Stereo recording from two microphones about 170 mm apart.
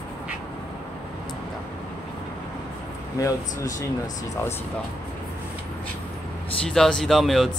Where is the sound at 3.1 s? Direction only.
20° left (ahead or behind).